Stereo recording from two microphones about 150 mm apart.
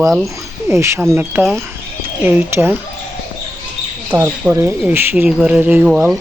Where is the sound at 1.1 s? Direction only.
15° right (ahead or behind).